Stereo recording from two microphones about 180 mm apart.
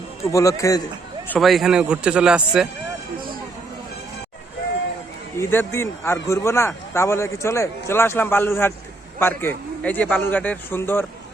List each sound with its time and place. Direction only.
0.2 s speech: 15° left (ahead or behind)
1.3 s a man's voice: centre (ahead or behind)
5.4 s speech: 15° left (ahead or behind)